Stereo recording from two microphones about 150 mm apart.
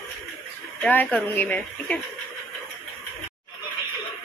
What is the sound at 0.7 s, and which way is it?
Speech, 10° left (ahead or behind).